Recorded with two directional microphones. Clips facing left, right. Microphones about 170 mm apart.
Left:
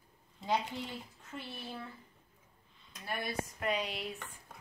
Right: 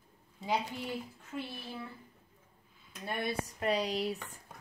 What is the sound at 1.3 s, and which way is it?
Speech, 10° right (ahead or behind).